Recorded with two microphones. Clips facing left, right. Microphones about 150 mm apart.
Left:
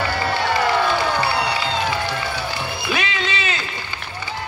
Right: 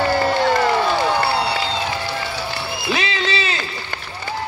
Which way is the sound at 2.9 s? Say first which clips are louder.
Right 3 dB; 30° right (ahead or behind).